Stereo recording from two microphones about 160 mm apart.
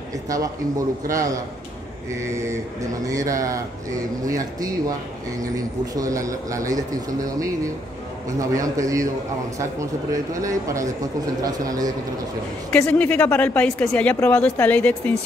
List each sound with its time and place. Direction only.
0.3 s speech: 20° right (ahead or behind)
8.4 s speech: 20° right (ahead or behind)
12.7 s speech: 10° left (ahead or behind)